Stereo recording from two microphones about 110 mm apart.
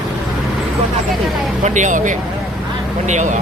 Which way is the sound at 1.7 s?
90° right.